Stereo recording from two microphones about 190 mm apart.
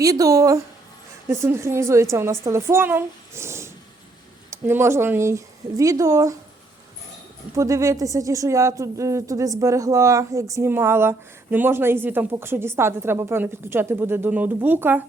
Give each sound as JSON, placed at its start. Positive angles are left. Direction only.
{"t": 0.0, "sound": "a woman's voice", "side_deg": -20}
{"t": 7.5, "sound": "a woman's voice", "side_deg": -15}